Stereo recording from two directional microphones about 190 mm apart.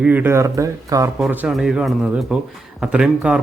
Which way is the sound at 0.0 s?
10° right (ahead or behind).